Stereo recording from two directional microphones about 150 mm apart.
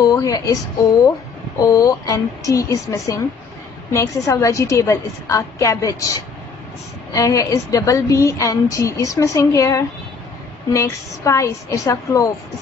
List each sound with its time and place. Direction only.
0.0 s a woman's voice: 25° left (ahead or behind)
1.6 s a woman's voice: 25° left (ahead or behind)